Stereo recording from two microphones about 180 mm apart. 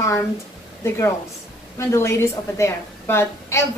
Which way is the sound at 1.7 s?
15° left (ahead or behind).